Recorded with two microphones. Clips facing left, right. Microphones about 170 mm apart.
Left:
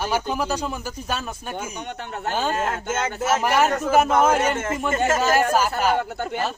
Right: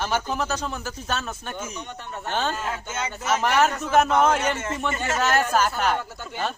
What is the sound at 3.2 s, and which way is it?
Speech, 5° left (ahead or behind).